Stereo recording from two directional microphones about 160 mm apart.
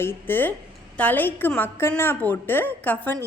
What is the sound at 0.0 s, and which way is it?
A woman's voice, 15° left (ahead or behind).